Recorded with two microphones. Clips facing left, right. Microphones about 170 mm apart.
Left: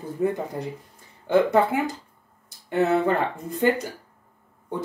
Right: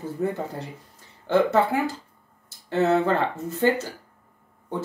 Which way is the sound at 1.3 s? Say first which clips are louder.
Left 1 dB; 15° left (ahead or behind).